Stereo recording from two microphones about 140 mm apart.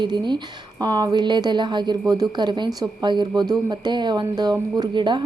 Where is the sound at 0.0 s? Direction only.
30° right (ahead or behind).